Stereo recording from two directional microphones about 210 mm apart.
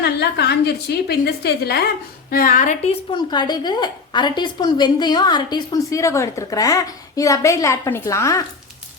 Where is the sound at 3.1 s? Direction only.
20° left (ahead or behind).